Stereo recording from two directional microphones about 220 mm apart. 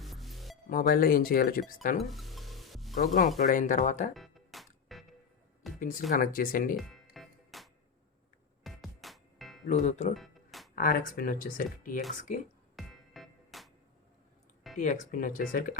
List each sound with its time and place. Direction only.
0.0 s music: centre (ahead or behind)
0.7 s speech: 40° left (ahead or behind)
2.0 s stir: centre (ahead or behind)
3.0 s speech: 35° left (ahead or behind)
4.1 s music: centre (ahead or behind)
5.6 s a sound: centre (ahead or behind)
6.1 s speech: 40° left (ahead or behind)
6.7 s music: centre (ahead or behind)
9.6 s speech: 30° left (ahead or behind)
10.2 s music: centre (ahead or behind)
10.8 s speech: 40° left (ahead or behind)
12.7 s music: centre (ahead or behind)
14.8 s speech: 35° left (ahead or behind)